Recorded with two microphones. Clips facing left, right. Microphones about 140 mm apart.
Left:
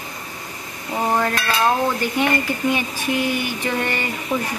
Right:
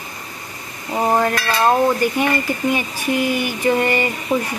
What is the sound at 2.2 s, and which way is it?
A woman's voice, 10° right (ahead or behind).